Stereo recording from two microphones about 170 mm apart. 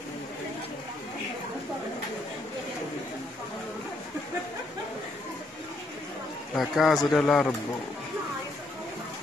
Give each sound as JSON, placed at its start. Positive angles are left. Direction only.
{"t": 6.5, "sound": "a man's voice", "side_deg": 0}